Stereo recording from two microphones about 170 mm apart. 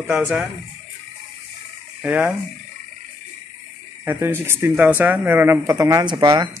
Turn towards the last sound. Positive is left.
turn(degrees=-25)  # may be behind; listen again after turning